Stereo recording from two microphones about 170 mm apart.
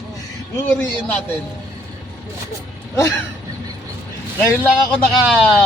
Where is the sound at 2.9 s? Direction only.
15° left (ahead or behind).